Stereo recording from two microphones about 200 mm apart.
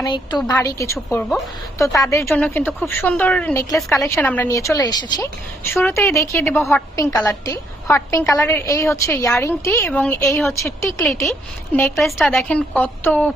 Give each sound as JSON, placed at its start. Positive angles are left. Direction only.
{"t": 0.0, "sound": "a woman's voice", "side_deg": 20}
{"t": 11.3, "sound": "a woman's voice", "side_deg": 5}